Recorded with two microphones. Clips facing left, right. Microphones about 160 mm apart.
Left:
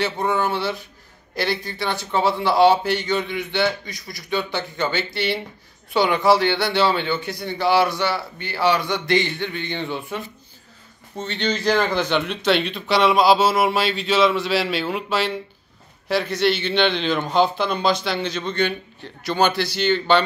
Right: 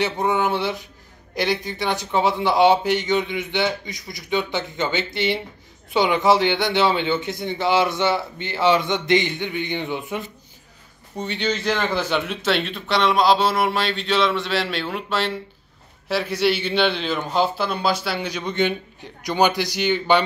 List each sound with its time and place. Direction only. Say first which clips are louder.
0.0 s a man's voice: right 1 dB; 15° right (ahead or behind)